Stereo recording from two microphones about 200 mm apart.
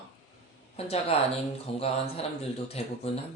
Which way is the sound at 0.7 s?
30° left (ahead or behind).